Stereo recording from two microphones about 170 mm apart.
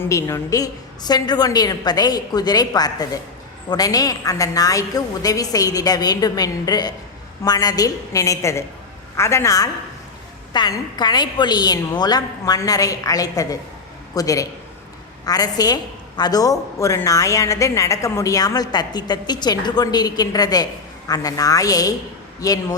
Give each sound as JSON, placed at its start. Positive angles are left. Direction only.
{"t": 0.0, "sound": "a woman's voice", "side_deg": 15}